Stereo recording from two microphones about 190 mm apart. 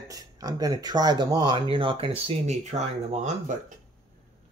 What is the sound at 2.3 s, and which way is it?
Speech, 35° right (ahead or behind).